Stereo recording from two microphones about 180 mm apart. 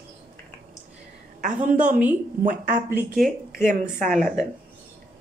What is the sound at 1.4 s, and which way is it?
A woman's voice, 45° right (ahead or behind).